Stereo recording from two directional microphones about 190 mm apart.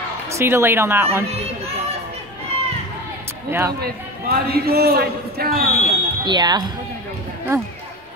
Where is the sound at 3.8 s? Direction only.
55° right (ahead or behind).